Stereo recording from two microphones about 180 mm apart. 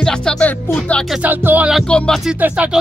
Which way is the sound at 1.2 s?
10° right (ahead or behind).